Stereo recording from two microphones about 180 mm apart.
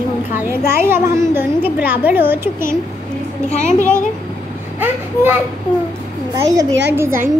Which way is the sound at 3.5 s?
45° left (ahead or behind).